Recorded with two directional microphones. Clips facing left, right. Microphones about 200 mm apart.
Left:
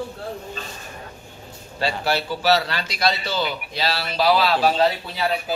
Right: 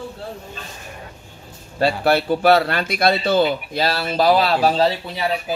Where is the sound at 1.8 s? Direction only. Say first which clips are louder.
Right 6 dB; 55° right (ahead or behind).